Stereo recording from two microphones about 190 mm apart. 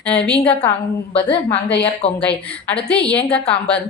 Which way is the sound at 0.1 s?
5° left (ahead or behind).